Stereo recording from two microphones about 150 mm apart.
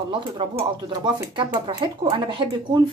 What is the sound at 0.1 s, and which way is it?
Speech, 35° right (ahead or behind).